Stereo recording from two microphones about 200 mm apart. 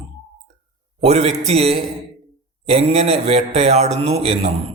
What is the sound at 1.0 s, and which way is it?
A man's voice, 30° right (ahead or behind).